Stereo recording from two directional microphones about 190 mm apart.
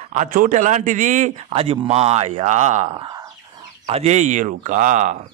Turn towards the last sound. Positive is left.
turn(degrees=-40)  # may be behind; listen again after turning